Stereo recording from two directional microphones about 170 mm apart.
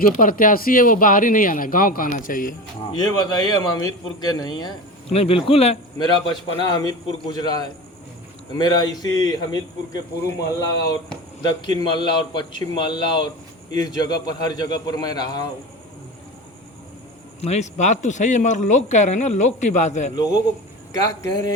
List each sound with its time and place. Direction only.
0.0 s speech: 55° left (ahead or behind)
2.9 s a man's voice: 25° left (ahead or behind)
5.0 s a man's voice: 35° left (ahead or behind)
6.7 s a man's voice: 20° left (ahead or behind)
17.4 s speech: 40° left (ahead or behind)
20.1 s a man's voice: 20° left (ahead or behind)